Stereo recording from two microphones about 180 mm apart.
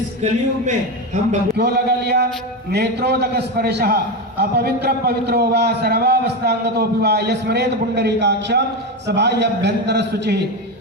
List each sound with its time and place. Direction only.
0.2 s a man's voice: 35° right (ahead or behind)
1.5 s a man's voice: 65° right (ahead or behind)